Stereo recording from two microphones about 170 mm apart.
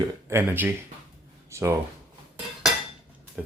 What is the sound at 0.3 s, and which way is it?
Speech, 15° right (ahead or behind).